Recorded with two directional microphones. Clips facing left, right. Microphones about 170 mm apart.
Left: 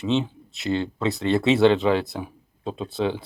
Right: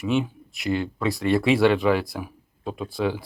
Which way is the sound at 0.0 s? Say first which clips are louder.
Even; 25° left (ahead or behind).